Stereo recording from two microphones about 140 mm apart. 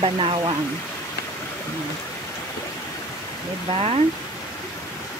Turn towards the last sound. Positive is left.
turn(degrees=-45)  # may be behind; listen again after turning